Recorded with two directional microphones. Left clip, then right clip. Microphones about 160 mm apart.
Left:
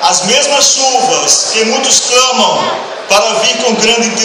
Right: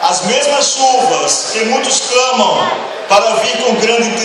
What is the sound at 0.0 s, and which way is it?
A man's voice, 35° right (ahead or behind).